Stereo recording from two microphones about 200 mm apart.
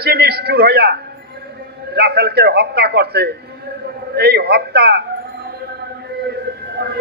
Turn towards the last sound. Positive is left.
turn(degrees=-55)  # may be behind; listen again after turning